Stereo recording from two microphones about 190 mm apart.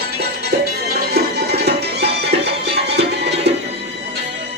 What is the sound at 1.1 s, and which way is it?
Music, 60° right (ahead or behind).